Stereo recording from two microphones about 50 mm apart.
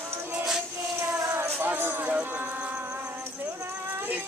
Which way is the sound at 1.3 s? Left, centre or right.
Right.